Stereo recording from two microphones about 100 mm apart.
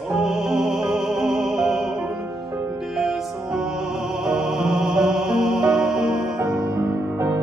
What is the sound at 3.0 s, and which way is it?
Music, 5° right (ahead or behind).